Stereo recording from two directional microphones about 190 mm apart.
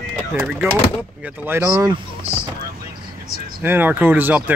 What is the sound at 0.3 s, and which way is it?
Speech, 5° right (ahead or behind).